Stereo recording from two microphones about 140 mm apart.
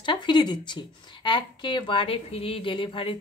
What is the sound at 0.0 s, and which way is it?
A woman's voice, 35° left (ahead or behind).